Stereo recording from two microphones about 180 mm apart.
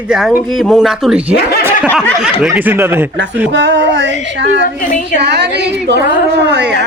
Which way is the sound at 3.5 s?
80° right.